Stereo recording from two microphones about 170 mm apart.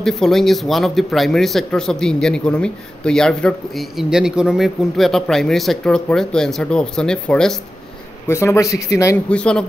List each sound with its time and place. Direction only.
0.0 s speech: 5° left (ahead or behind)
8.3 s a man's voice: 15° left (ahead or behind)
9.3 s speech: 5° left (ahead or behind)